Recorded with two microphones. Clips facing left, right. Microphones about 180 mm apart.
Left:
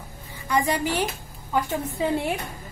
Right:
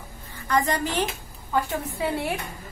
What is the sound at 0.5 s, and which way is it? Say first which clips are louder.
A woman's voice: left 1 dB; 10° left (ahead or behind).